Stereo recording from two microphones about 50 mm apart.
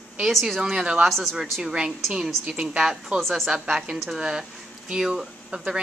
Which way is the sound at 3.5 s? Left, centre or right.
Centre.